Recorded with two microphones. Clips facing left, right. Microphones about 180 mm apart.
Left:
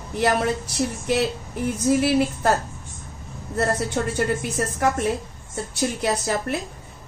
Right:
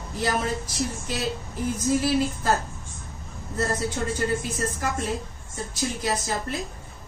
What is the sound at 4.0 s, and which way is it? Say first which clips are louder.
Speech: left 3 dB; 65° left (ahead or behind).